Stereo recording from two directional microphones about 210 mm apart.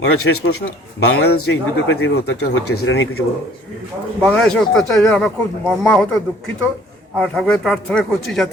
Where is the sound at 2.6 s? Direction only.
90° left; by 3.2 s 60° left (ahead or behind).